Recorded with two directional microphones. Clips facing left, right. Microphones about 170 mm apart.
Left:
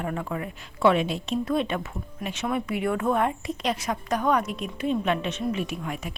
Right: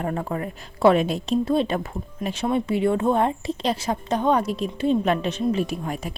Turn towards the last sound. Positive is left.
turn(degrees=-35)  # may be behind; listen again after turning